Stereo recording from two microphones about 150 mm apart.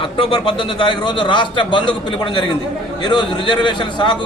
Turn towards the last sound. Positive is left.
turn(degrees=30)  # may be behind; listen again after turning